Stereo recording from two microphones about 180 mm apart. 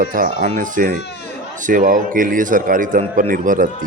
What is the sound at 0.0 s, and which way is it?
Speech, 50° right (ahead or behind).